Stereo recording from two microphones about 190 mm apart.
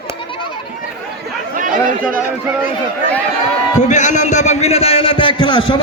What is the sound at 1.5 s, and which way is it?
Chatter, 45° right (ahead or behind).